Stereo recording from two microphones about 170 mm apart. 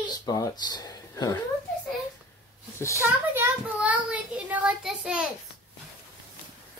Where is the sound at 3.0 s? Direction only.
15° right (ahead or behind).